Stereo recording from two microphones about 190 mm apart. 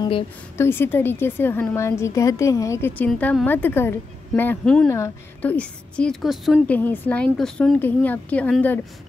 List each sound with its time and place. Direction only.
0.6 s a woman's voice: 10° left (ahead or behind)